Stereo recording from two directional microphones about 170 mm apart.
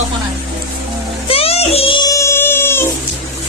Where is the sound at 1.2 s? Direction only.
35° left (ahead or behind).